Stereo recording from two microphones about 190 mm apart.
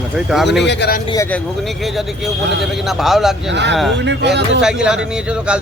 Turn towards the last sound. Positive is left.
turn(degrees=-5)  # may be behind; listen again after turning